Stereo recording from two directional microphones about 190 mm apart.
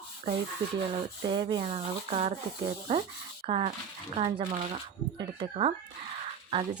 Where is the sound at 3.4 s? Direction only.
25° right (ahead or behind).